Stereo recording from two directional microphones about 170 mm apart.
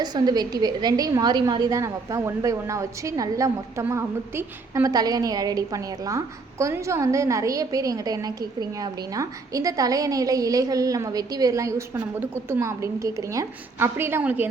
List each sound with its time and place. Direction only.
0.0 s a woman's voice: 25° right (ahead or behind)